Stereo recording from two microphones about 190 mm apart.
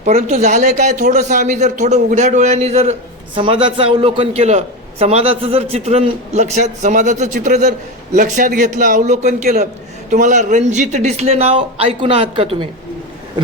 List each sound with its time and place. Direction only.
0.2 s a man's voice: 40° right (ahead or behind)